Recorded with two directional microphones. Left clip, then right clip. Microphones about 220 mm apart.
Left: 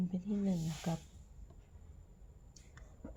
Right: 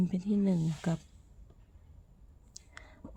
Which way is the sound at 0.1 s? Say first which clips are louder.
Right 7 dB; 40° right (ahead or behind).